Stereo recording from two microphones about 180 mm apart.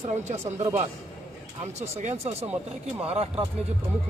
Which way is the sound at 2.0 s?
35° right (ahead or behind).